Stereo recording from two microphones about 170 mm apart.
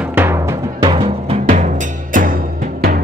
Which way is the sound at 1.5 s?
50° right (ahead or behind).